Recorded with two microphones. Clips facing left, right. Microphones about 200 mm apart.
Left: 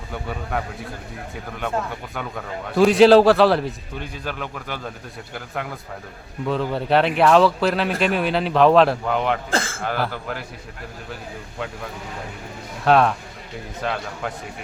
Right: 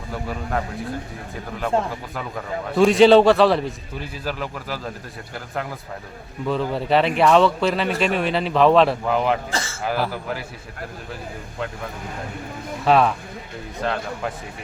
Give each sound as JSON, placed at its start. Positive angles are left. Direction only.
{"t": 0.1, "sound": "speech", "side_deg": 0}
{"t": 1.9, "sound": "speech", "side_deg": 0}
{"t": 6.5, "sound": "speech", "side_deg": 0}
{"t": 9.5, "sound": "a man's voice", "side_deg": 55}
{"t": 9.8, "sound": "speech", "side_deg": -5}
{"t": 12.8, "sound": "speech", "side_deg": 0}